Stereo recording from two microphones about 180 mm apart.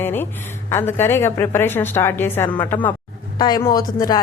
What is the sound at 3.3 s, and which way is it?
Speech, 20° left (ahead or behind).